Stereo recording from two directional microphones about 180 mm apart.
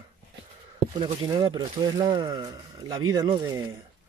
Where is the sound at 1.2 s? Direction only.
25° right (ahead or behind).